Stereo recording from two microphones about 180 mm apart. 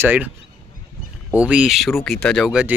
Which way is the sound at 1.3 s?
5° right (ahead or behind).